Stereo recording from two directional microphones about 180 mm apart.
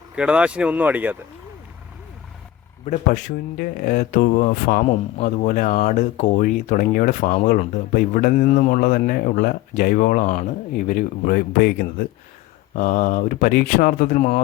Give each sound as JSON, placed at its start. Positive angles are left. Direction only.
{"t": 0.2, "sound": "speech", "side_deg": -5}
{"t": 2.8, "sound": "speech", "side_deg": 45}
{"t": 4.9, "sound": "speech", "side_deg": 40}